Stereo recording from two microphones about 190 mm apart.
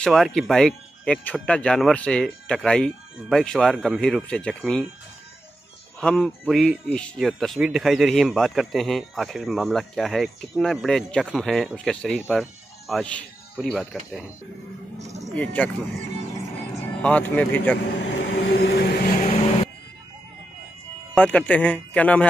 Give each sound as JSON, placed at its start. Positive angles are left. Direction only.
{"t": 0.0, "sound": "speech", "side_deg": 5}
{"t": 5.9, "sound": "speech", "side_deg": 5}
{"t": 15.3, "sound": "speech", "side_deg": 5}
{"t": 17.0, "sound": "speech", "side_deg": 5}
{"t": 18.2, "sound": "vehicle", "side_deg": 65}
{"t": 19.2, "sound": "vehicle", "side_deg": 30}
{"t": 21.1, "sound": "speech", "side_deg": 5}